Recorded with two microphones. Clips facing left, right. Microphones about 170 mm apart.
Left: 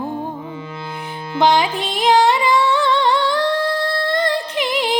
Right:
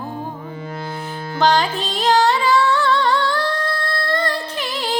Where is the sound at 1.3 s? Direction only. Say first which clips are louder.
Left 2 dB; 15° left (ahead or behind).